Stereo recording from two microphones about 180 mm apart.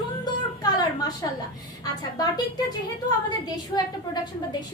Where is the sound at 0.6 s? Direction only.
20° left (ahead or behind).